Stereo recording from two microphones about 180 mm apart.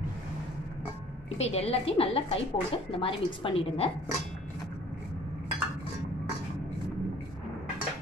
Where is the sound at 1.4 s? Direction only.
35° left (ahead or behind).